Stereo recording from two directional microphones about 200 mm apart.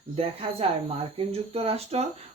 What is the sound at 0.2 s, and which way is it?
Speech, 30° right (ahead or behind).